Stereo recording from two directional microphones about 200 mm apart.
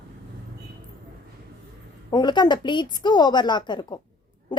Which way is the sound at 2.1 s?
20° left (ahead or behind).